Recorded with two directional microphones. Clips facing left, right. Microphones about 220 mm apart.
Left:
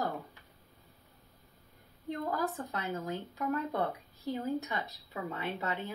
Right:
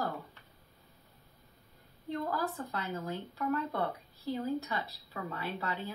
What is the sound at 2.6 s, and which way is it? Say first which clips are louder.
Speech: left 1 dB; 20° left (ahead or behind).